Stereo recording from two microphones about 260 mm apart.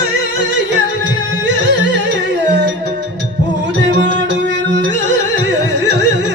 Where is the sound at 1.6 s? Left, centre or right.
Right.